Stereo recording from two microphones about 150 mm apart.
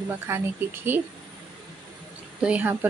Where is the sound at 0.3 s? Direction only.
20° right (ahead or behind).